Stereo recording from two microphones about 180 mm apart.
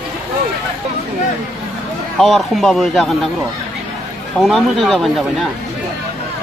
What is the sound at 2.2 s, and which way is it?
A man's voice, centre (ahead or behind).